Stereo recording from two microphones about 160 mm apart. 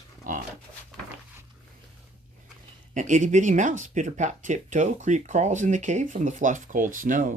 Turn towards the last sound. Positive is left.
turn(degrees=-55)  # may be behind; listen again after turning